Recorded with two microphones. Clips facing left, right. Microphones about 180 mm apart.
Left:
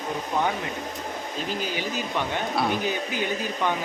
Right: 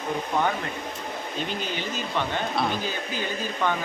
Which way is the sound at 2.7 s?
15° left (ahead or behind).